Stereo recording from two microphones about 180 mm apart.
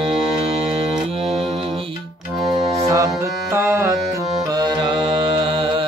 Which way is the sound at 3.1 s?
15° right (ahead or behind).